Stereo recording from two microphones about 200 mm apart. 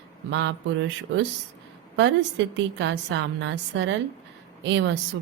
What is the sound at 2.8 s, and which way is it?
A woman's voice, 65° right (ahead or behind).